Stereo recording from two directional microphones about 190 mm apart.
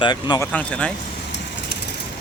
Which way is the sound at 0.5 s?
5° left (ahead or behind).